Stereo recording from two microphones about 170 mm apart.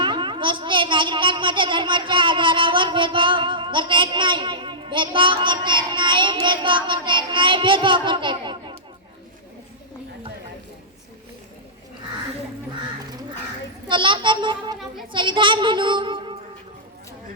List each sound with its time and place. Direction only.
0.0 s a child's voice: 30° right (ahead or behind)
13.8 s a child's voice: 30° right (ahead or behind)